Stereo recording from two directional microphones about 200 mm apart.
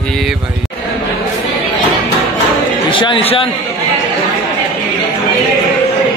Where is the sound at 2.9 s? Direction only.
25° left (ahead or behind).